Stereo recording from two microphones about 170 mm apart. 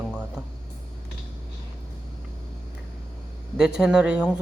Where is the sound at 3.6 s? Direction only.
5° right (ahead or behind).